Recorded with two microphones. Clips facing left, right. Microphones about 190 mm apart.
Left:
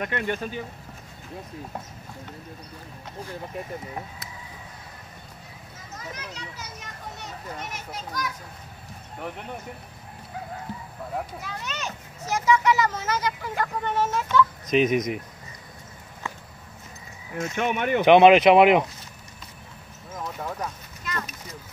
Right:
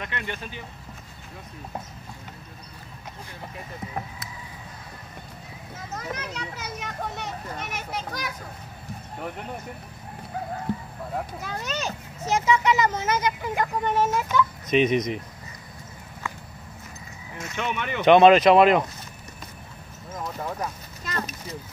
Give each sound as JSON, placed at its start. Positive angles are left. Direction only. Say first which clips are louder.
{"t": 0.0, "sound": "speech", "louder": "left 6 dB", "side_deg": 45}
{"t": 5.9, "sound": "a child's voice", "louder": "right 5 dB", "side_deg": -60}
{"t": 11.4, "sound": "a child's voice", "louder": "right 4 dB", "side_deg": -40}
{"t": 12.3, "sound": "speech", "louder": "even", "side_deg": -20}
{"t": 14.8, "sound": "speech", "louder": "even", "side_deg": 5}
{"t": 17.4, "sound": "speech", "louder": "left 4 dB", "side_deg": 50}
{"t": 18.0, "sound": "speech", "louder": "even", "side_deg": 15}
{"t": 20.3, "sound": "clip-clop", "louder": "right 1 dB", "side_deg": 0}
{"t": 21.0, "sound": "a sound", "louder": "right 2 dB", "side_deg": -35}